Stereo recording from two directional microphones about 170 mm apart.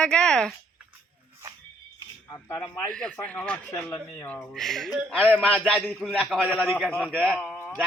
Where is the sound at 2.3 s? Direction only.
20° left (ahead or behind).